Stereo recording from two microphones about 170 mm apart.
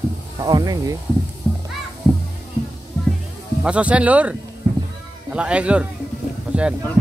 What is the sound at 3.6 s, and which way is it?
Speech, 5° right (ahead or behind).